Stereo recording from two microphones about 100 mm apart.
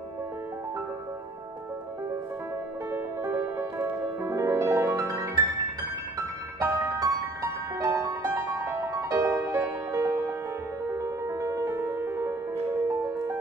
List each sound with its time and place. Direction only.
2.9 s music: 25° right (ahead or behind)
6.6 s music: 30° right (ahead or behind)